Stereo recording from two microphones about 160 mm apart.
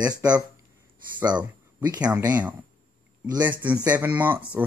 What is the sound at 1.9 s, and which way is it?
Speech, 10° right (ahead or behind).